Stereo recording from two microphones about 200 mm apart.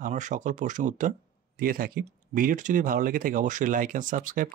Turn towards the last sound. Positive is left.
turn(degrees=-40)  # may be behind; listen again after turning